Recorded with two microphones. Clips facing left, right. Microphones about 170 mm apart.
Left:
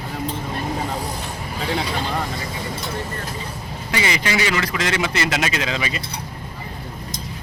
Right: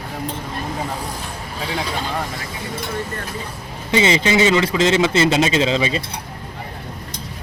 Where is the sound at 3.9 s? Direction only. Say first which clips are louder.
Right 6 dB; 25° right (ahead or behind).